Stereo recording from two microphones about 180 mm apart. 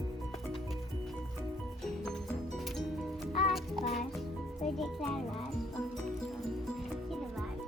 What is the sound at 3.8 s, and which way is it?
Music, 35° left (ahead or behind).